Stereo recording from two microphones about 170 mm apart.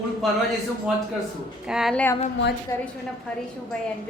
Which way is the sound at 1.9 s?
10° left (ahead or behind).